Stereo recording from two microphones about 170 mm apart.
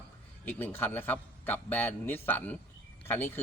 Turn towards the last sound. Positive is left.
turn(degrees=10)  # may be behind; listen again after turning